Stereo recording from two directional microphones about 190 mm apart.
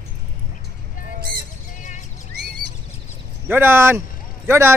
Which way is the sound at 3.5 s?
10° right (ahead or behind).